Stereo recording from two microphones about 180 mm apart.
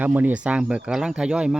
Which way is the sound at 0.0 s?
10° right (ahead or behind).